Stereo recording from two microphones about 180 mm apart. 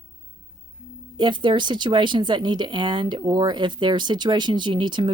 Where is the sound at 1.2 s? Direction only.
25° right (ahead or behind).